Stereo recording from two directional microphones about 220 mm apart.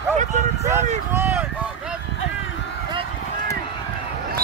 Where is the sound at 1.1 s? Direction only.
10° right (ahead or behind).